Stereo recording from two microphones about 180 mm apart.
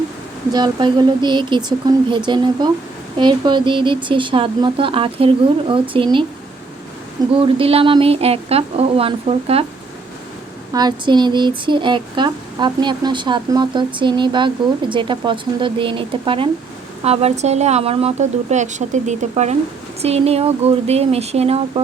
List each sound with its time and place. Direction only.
0.5 s speech: 25° right (ahead or behind)
7.4 s speech: 30° right (ahead or behind)
10.7 s speech: 25° right (ahead or behind)